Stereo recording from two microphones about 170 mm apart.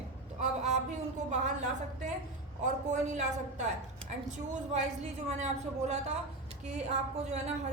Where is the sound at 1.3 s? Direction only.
45° right (ahead or behind).